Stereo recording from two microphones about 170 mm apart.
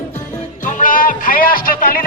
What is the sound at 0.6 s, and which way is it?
Music, 50° left (ahead or behind).